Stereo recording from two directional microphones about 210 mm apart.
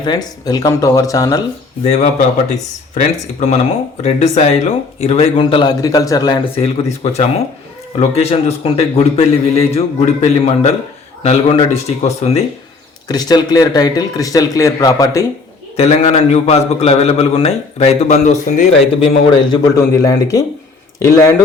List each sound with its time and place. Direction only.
0.0 s speech: 20° left (ahead or behind)
1.8 s a man's voice: 30° left (ahead or behind)
6.8 s a man's voice: 30° left (ahead or behind)
13.1 s speech: 20° left (ahead or behind)
15.7 s a man's voice: 30° left (ahead or behind)
18.9 s a man's voice: 25° left (ahead or behind)